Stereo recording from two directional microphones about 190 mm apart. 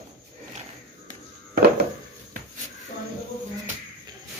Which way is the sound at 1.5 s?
55° right (ahead or behind).